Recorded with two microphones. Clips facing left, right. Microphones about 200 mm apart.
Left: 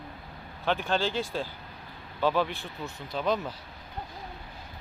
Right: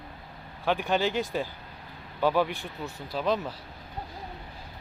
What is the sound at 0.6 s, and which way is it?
Speech, 15° right (ahead or behind).